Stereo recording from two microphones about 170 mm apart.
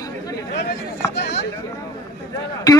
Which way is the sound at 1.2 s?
75° left (ahead or behind).